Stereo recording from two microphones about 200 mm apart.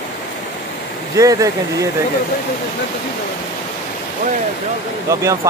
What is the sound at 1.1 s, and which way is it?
Speech, 15° right (ahead or behind).